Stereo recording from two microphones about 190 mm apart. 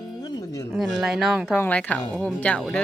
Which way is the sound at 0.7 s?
5° right (ahead or behind).